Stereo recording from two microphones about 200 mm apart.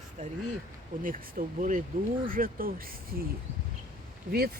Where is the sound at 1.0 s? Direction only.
45° right (ahead or behind).